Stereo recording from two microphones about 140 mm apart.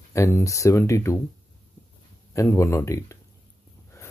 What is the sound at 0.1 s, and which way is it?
Speech, 20° left (ahead or behind).